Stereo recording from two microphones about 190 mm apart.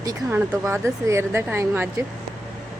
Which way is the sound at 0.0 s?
15° right (ahead or behind).